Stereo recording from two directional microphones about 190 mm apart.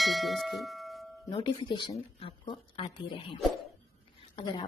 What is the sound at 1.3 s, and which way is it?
Speech, 25° left (ahead or behind).